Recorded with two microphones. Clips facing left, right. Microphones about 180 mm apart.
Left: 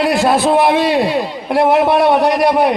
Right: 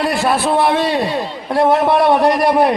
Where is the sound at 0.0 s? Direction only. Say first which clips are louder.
Left 3 dB; 15° left (ahead or behind).